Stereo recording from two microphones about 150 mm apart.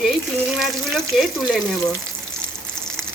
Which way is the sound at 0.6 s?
Centre (ahead or behind).